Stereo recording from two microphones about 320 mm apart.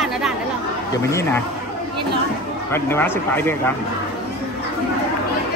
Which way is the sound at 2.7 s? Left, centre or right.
Centre.